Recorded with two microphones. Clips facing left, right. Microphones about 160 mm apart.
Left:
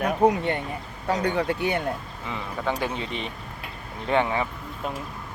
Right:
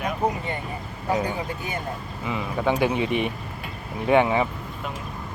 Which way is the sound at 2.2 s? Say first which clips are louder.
Right 5 dB; 5° right (ahead or behind).